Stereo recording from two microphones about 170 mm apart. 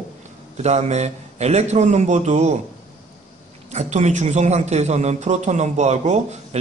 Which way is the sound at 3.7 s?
40° right (ahead or behind).